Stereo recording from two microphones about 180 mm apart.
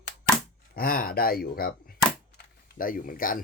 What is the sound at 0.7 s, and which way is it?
Speech, 55° left (ahead or behind).